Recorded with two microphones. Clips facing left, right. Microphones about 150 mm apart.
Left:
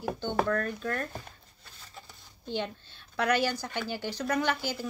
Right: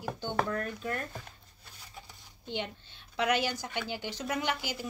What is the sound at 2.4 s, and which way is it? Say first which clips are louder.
A woman's voice: left 3 dB; 15° right (ahead or behind).